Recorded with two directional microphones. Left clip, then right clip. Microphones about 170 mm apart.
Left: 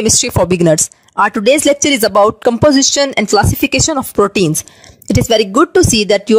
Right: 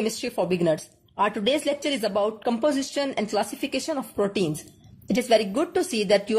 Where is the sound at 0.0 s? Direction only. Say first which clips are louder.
Left 14 dB; 70° left (ahead or behind).